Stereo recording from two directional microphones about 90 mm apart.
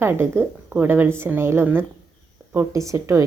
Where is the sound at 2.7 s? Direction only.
35° right (ahead or behind).